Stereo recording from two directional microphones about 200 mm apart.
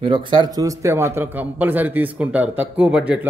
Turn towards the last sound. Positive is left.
turn(degrees=-5)  # may be behind; listen again after turning